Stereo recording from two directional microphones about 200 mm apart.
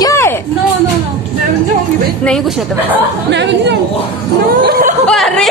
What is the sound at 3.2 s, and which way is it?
Speech, 60° right (ahead or behind).